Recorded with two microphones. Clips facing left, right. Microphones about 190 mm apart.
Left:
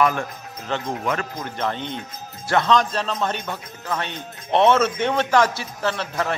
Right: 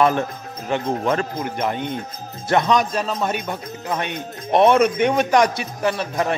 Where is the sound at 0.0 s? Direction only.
25° right (ahead or behind).